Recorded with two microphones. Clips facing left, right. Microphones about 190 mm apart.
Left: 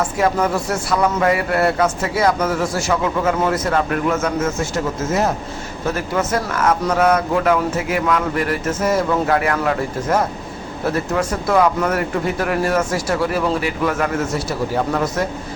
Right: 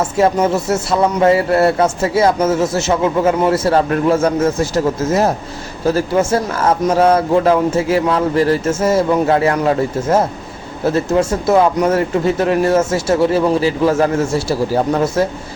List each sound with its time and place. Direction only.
0.0 s a man's voice: 25° right (ahead or behind)